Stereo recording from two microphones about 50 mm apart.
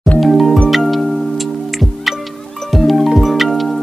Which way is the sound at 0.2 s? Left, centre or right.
Centre.